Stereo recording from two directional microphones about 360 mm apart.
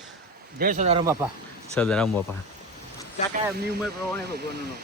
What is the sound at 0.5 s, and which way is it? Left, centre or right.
Speech, right.